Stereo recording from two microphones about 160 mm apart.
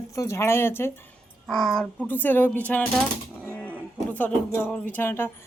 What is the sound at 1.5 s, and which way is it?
A woman's voice, centre (ahead or behind).